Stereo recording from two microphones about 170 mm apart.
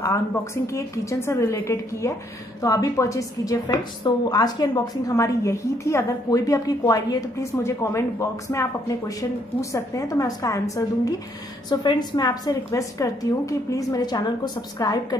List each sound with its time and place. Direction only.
0.0 s a woman's voice: 15° left (ahead or behind)